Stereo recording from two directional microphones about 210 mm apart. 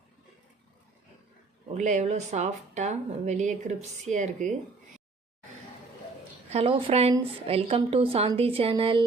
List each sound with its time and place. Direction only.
1.7 s speech: 35° right (ahead or behind)
6.5 s a woman's voice: 30° right (ahead or behind)